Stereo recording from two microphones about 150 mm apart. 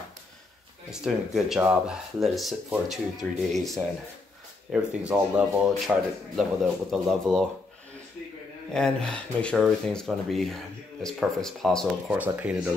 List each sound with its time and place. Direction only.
0.8 s speech: 5° right (ahead or behind)
8.7 s speech: 5° left (ahead or behind)
12.1 s speech: 10° right (ahead or behind)